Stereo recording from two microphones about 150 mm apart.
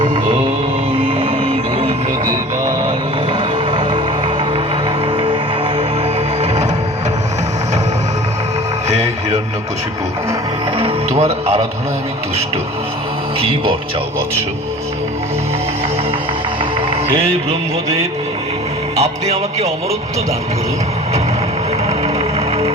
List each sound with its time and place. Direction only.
0.0 s music: 35° right (ahead or behind)
3.3 s music: 35° right (ahead or behind)
5.1 s music: 35° right (ahead or behind)
10.8 s music: 40° right (ahead or behind)
18.9 s speech: 45° right (ahead or behind)
21.8 s music: 45° right (ahead or behind)